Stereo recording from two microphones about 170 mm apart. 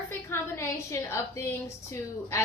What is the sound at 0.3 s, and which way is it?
A woman's voice, 15° left (ahead or behind).